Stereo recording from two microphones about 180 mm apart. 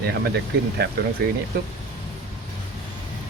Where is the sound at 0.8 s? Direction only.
60° right (ahead or behind).